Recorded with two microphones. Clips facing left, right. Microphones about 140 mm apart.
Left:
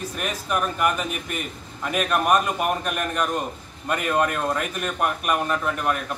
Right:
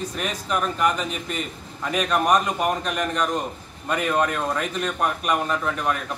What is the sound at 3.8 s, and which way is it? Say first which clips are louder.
Speech: even; 5° left (ahead or behind).